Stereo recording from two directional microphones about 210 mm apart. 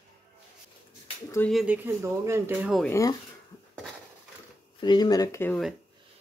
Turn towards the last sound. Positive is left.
turn(degrees=10)  # may be behind; listen again after turning